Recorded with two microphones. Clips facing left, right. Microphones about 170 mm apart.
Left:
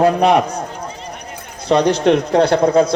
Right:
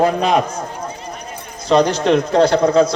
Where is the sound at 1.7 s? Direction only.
65° left (ahead or behind).